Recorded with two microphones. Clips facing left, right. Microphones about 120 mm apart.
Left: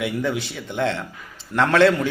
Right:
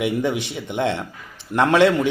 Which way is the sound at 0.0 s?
20° right (ahead or behind).